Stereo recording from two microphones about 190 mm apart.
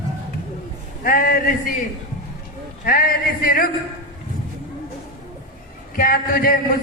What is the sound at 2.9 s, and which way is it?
Speech, 50° left (ahead or behind).